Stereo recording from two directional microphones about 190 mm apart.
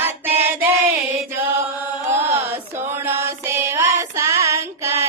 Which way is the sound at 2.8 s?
15° right (ahead or behind).